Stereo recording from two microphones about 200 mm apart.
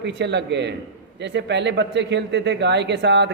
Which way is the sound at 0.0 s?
60° right (ahead or behind).